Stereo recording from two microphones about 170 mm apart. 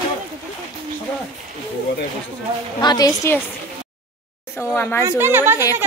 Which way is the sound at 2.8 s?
25° left (ahead or behind).